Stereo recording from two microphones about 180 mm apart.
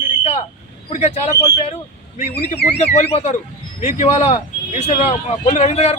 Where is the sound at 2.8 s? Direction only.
40° left (ahead or behind).